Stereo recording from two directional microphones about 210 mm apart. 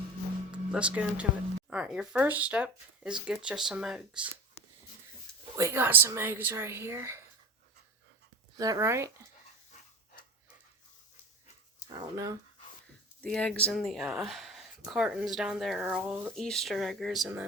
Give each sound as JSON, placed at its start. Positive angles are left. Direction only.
{"t": 0.5, "sound": "speech", "side_deg": -5}
{"t": 5.5, "sound": "speech", "side_deg": -10}
{"t": 8.5, "sound": "speech", "side_deg": -15}
{"t": 11.9, "sound": "speech", "side_deg": -15}
{"t": 13.2, "sound": "speech", "side_deg": 5}